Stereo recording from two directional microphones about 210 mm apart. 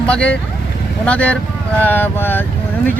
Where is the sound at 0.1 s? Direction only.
5° left (ahead or behind).